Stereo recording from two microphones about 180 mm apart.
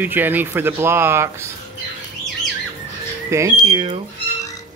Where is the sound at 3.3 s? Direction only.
20° right (ahead or behind).